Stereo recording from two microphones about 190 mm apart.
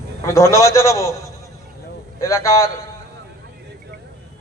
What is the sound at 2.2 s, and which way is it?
Speech, 15° left (ahead or behind).